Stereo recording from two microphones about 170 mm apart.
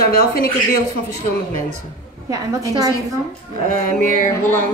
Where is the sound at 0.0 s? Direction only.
60° left (ahead or behind).